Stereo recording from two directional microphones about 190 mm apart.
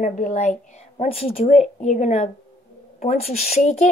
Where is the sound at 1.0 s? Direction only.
30° left (ahead or behind).